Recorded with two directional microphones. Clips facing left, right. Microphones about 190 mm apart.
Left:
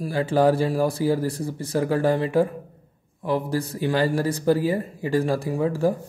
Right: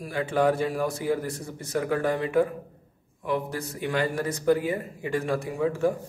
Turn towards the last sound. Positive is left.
turn(degrees=35)  # may be behind; listen again after turning